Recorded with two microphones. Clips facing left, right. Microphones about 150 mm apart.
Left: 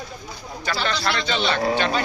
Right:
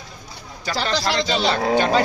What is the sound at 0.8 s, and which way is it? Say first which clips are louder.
A man's voice: right 4 dB; 35° right (ahead or behind).